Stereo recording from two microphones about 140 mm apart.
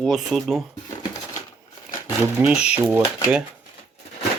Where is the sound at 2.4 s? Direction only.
20° right (ahead or behind).